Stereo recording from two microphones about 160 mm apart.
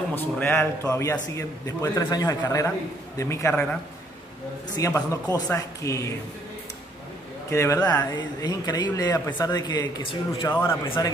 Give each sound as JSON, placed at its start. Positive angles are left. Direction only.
{"t": 0.1, "sound": "a man's voice", "side_deg": 10}
{"t": 4.8, "sound": "speech", "side_deg": 20}
{"t": 7.5, "sound": "a man's voice", "side_deg": 20}